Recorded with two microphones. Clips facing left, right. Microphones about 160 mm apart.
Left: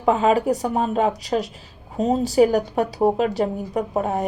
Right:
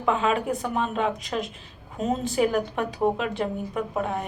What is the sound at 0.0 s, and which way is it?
A woman's voice, 40° left (ahead or behind).